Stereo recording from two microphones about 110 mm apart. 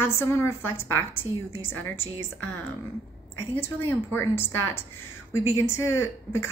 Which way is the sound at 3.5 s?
20° left (ahead or behind).